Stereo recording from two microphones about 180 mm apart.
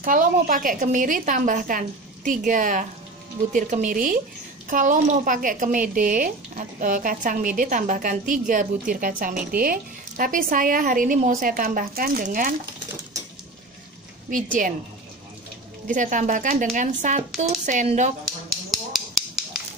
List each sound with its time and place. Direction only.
0.0 s speech: 50° right (ahead or behind)
14.3 s speech: 45° right (ahead or behind)
15.9 s speech: 45° right (ahead or behind)
18.9 s a sound: 5° right (ahead or behind)